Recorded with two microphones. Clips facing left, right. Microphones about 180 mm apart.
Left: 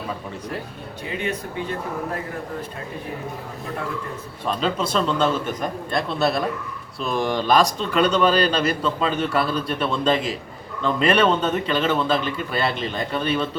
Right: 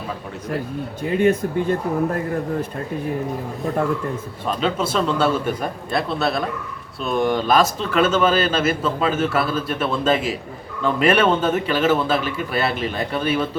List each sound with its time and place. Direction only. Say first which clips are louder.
1.0 s speech: right 10 dB; 45° right (ahead or behind)
4.4 s a man's voice: right 1 dB; 5° right (ahead or behind)